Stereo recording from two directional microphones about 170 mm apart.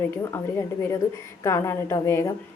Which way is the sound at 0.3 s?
15° left (ahead or behind).